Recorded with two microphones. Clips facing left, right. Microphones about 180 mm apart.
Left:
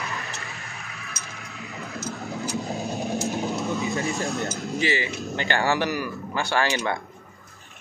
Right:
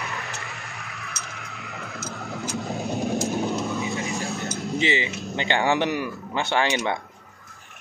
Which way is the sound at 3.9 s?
15° right (ahead or behind).